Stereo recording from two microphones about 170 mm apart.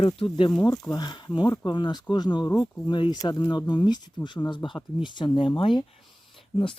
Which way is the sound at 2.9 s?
25° left (ahead or behind).